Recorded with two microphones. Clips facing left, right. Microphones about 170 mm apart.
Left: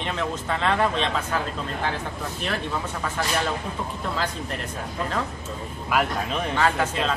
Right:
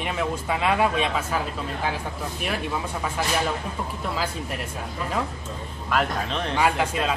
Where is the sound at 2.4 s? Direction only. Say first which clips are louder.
Even; 10° right (ahead or behind).